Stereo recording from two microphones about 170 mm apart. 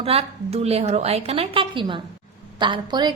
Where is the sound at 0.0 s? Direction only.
35° right (ahead or behind).